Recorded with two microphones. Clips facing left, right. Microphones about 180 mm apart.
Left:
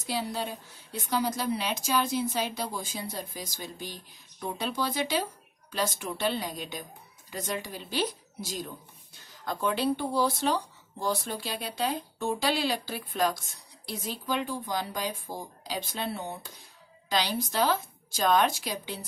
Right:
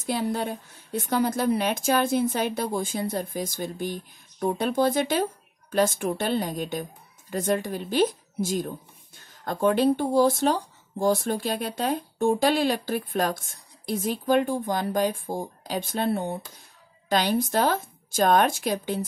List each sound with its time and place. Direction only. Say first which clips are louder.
0.0 s a woman's voice: right 5 dB; 55° right (ahead or behind)